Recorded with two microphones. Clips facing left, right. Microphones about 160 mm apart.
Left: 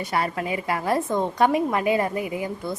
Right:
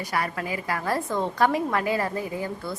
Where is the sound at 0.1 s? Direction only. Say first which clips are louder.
Left 3 dB; 25° left (ahead or behind).